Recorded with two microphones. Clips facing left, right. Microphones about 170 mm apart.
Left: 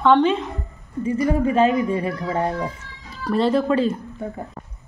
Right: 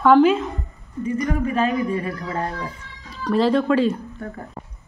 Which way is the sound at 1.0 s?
30° left (ahead or behind).